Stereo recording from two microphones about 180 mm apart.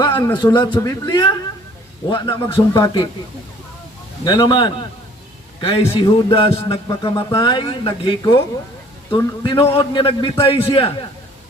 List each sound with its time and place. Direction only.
0.0 s a man's voice: 25° left (ahead or behind)
4.2 s speech: 25° left (ahead or behind)